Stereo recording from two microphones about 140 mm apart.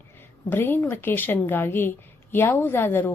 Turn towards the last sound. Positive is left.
turn(degrees=15)  # may be behind; listen again after turning